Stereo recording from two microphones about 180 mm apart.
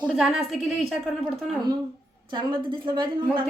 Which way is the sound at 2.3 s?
25° right (ahead or behind).